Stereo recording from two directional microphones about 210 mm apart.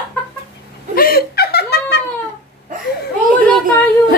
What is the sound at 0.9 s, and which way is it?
Laughter, 45° left (ahead or behind).